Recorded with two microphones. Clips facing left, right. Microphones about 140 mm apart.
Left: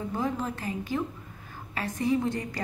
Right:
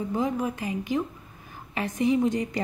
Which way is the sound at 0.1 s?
15° right (ahead or behind).